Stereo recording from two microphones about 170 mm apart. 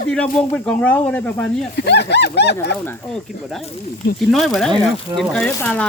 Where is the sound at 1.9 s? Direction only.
80° left.